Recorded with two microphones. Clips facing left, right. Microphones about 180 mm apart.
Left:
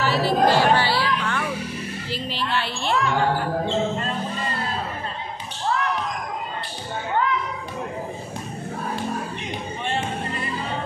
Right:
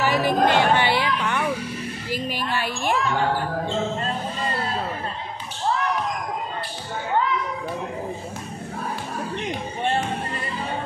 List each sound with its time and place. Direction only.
0.0 s chatter: 15° right (ahead or behind)
2.0 s music: 10° right (ahead or behind)
2.5 s a sound: 10° right (ahead or behind)